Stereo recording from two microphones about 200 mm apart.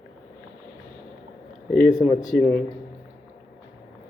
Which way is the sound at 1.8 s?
40° left (ahead or behind).